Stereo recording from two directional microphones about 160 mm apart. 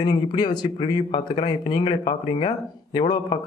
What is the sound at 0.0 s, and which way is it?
Speech, 30° left (ahead or behind).